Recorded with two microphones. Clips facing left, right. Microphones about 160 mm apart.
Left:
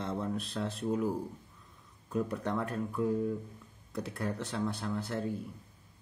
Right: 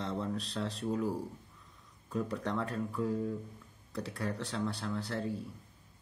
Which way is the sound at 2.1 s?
10° left (ahead or behind).